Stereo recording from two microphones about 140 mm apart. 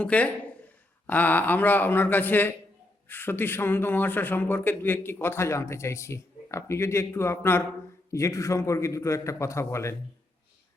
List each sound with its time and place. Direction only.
0.0 s a man's voice: 10° left (ahead or behind)